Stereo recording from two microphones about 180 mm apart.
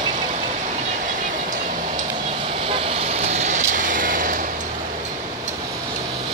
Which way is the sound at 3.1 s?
40° right (ahead or behind).